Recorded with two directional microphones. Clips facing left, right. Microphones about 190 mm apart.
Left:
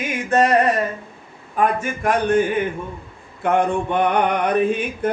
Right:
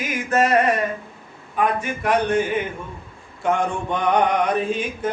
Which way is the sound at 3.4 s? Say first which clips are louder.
Left 3 dB; 60° left (ahead or behind).